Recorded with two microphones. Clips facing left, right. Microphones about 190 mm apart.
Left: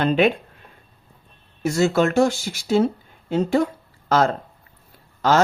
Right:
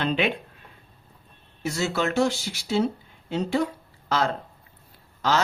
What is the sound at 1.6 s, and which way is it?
Speech, 50° left (ahead or behind).